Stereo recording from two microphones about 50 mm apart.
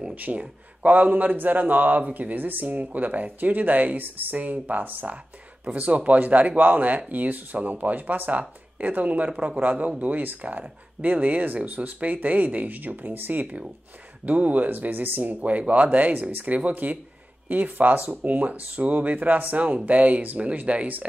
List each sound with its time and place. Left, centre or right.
0.1 s a man's voice: right
9.3 s a man's voice: centre
9.6 s a man's voice: right